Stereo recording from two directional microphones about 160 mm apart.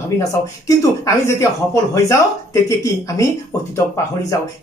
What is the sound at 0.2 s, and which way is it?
Speech, 20° left (ahead or behind).